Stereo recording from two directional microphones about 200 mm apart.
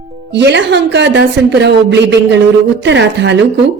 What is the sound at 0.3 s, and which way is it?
A woman's voice, 60° right (ahead or behind).